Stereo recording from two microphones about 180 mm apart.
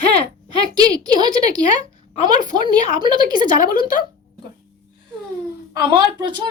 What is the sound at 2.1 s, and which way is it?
Speech, 45° left (ahead or behind).